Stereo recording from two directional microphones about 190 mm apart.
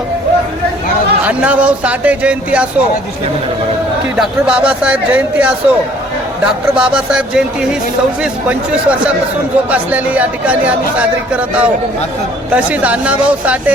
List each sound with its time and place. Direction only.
1.3 s speech: 5° right (ahead or behind)
4.2 s speech: 5° right (ahead or behind)